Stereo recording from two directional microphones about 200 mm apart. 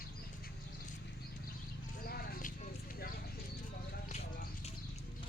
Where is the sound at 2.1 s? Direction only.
50° left (ahead or behind).